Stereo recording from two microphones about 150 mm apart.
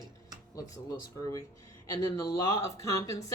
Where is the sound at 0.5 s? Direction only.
20° left (ahead or behind).